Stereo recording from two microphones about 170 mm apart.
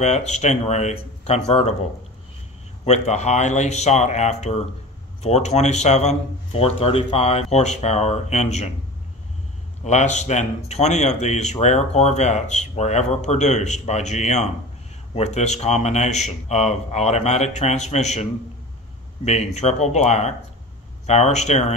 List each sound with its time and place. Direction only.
0.0 s speech: 40° left (ahead or behind)
2.8 s speech: 40° left (ahead or behind)
9.8 s speech: 45° left (ahead or behind)
19.2 s speech: 40° left (ahead or behind)